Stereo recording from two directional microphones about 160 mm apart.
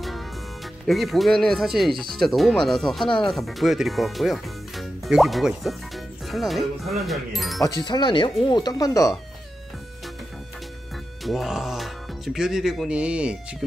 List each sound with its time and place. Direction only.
0.8 s speech: centre (ahead or behind)
7.8 s speech: 30° left (ahead or behind)
11.2 s speech: centre (ahead or behind)